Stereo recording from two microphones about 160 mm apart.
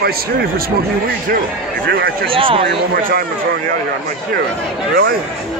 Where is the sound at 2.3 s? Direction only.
35° right (ahead or behind).